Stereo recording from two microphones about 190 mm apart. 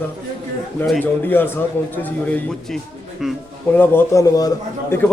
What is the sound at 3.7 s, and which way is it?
A man's voice, 15° left (ahead or behind).